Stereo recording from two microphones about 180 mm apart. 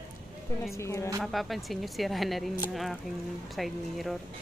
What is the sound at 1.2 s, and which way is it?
Speech, centre (ahead or behind).